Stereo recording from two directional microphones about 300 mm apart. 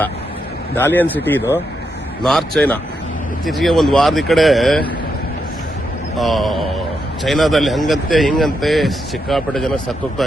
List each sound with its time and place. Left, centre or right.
0.8 s a man's voice: centre
6.1 s a man's voice: centre